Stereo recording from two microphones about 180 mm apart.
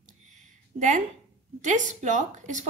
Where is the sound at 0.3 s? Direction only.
45° right (ahead or behind).